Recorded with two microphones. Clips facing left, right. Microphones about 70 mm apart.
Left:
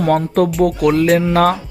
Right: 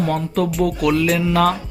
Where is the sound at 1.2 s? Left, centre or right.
Left.